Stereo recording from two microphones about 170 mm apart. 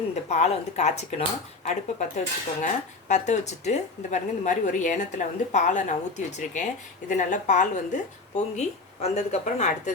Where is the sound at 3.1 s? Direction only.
45° left (ahead or behind).